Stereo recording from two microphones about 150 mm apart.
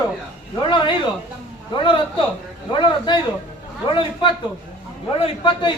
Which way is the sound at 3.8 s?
35° left (ahead or behind).